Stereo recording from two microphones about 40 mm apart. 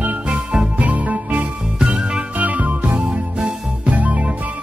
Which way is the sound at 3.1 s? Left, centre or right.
Centre.